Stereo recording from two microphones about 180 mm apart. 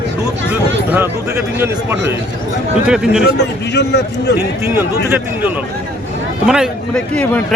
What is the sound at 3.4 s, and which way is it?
Speech, 70° left (ahead or behind).